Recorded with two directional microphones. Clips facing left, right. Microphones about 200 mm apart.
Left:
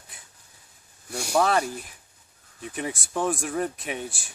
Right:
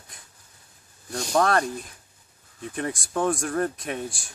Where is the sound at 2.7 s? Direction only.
5° left (ahead or behind).